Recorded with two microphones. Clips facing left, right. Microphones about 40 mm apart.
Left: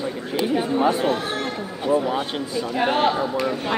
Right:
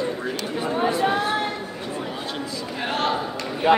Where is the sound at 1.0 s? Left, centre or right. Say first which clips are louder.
Right 1 dB; centre.